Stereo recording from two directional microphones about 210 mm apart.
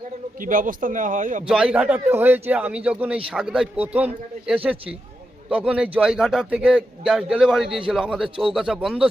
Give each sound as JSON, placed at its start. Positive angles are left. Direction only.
{"t": 0.4, "sound": "speech", "side_deg": -40}
{"t": 1.5, "sound": "a man's voice", "side_deg": -5}